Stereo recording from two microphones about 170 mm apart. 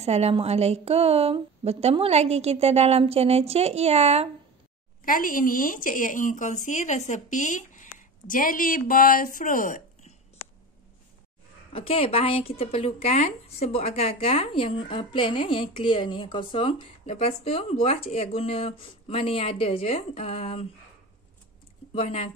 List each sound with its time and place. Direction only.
0.0 s a woman's voice: 40° right (ahead or behind)
5.0 s speech: 55° left (ahead or behind)
11.7 s speech: 35° left (ahead or behind)
21.9 s speech: 35° left (ahead or behind)